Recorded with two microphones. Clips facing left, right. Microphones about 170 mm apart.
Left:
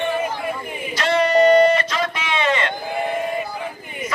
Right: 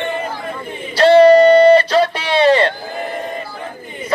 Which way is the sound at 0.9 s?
30° right (ahead or behind).